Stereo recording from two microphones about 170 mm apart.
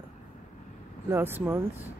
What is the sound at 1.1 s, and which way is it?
Speech, 10° right (ahead or behind).